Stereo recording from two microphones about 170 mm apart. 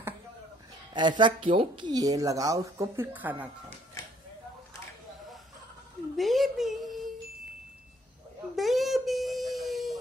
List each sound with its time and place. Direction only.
0.9 s speech: 25° right (ahead or behind); by 3.4 s 10° right (ahead or behind)
6.1 s speech: centre (ahead or behind)
8.5 s a sound: centre (ahead or behind)